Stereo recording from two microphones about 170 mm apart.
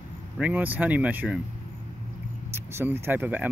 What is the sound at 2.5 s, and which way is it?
Speech, 15° right (ahead or behind).